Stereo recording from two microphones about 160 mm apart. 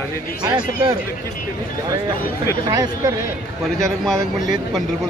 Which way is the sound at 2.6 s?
20° right (ahead or behind).